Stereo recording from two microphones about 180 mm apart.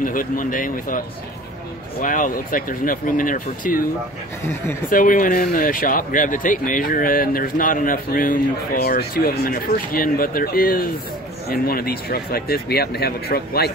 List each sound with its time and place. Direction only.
0.0 s speech: 50° left (ahead or behind)
4.8 s speech: 50° left (ahead or behind)